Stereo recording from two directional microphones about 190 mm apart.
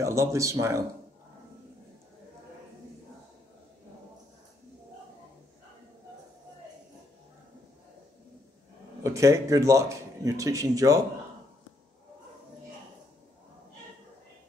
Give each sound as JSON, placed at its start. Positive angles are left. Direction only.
{"t": 0.0, "sound": "speech", "side_deg": -15}
{"t": 9.0, "sound": "speech", "side_deg": -15}